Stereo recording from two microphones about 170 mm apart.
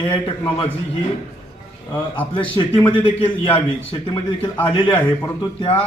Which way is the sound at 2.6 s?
30° left (ahead or behind).